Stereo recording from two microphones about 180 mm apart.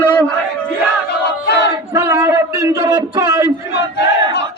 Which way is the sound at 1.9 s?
20° right (ahead or behind).